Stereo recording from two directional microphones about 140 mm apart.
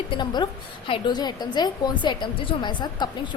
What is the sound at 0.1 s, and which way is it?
A woman's voice, 30° left (ahead or behind).